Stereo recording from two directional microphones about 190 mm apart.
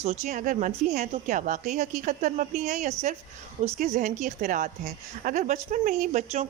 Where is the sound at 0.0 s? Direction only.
35° right (ahead or behind).